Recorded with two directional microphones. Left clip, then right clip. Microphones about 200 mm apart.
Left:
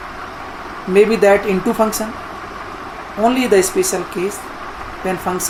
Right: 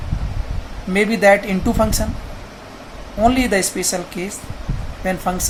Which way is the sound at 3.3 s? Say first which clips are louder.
Left 5 dB; 25° right (ahead or behind).